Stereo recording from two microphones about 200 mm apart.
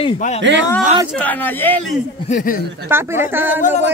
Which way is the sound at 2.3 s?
45° left (ahead or behind).